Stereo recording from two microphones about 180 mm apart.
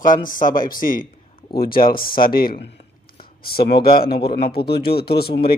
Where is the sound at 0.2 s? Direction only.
50° left (ahead or behind).